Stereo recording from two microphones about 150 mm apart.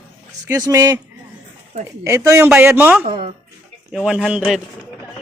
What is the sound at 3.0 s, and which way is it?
Speech, 40° right (ahead or behind).